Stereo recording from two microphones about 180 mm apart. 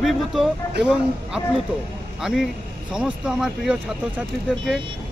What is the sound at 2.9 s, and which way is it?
Speech, 5° right (ahead or behind).